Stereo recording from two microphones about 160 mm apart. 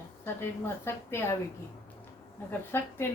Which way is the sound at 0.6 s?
15° left (ahead or behind).